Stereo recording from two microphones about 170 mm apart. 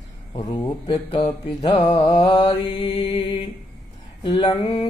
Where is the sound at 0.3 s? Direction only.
20° left (ahead or behind).